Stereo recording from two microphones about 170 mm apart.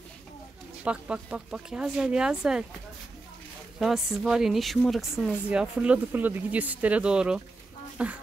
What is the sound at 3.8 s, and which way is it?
Speech, centre (ahead or behind).